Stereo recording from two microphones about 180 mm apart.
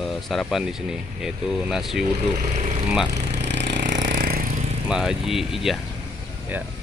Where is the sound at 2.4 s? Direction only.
40° right (ahead or behind).